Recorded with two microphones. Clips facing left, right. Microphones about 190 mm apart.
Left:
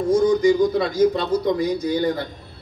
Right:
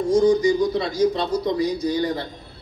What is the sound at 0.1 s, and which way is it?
Speech, 55° left (ahead or behind).